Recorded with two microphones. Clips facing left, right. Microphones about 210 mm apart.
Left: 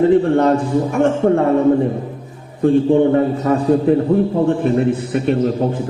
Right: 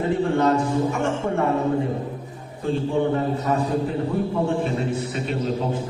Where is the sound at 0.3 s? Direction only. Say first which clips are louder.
Left 5 dB; 55° left (ahead or behind).